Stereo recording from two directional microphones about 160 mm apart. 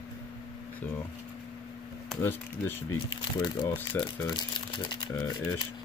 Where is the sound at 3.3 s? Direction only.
25° left (ahead or behind).